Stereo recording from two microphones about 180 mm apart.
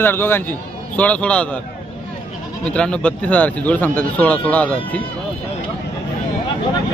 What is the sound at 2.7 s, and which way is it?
Speech, 5° left (ahead or behind).